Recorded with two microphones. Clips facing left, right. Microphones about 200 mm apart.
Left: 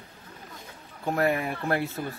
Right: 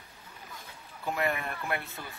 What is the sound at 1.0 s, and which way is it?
Speech, 30° left (ahead or behind).